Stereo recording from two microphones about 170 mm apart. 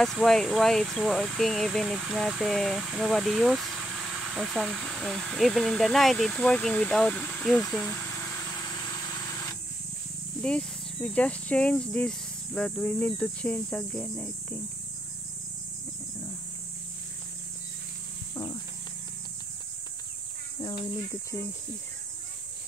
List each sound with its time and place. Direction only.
0.0 s speech: centre (ahead or behind)
7.6 s vehicle: 15° left (ahead or behind)
10.4 s speech: 5° left (ahead or behind)
18.3 s wild animals: 25° left (ahead or behind)